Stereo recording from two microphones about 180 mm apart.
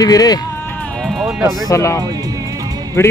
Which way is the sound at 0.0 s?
20° left (ahead or behind).